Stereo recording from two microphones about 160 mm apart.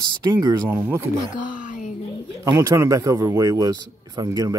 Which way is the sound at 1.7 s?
50° left (ahead or behind).